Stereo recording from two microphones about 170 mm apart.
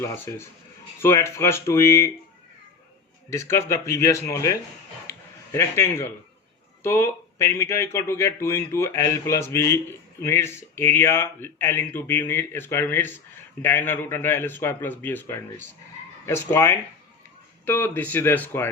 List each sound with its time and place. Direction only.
0.0 s speech: 15° left (ahead or behind)
3.2 s speech: 15° left (ahead or behind)
5.0 s a sound: 15° left (ahead or behind)
6.8 s speech: 15° left (ahead or behind)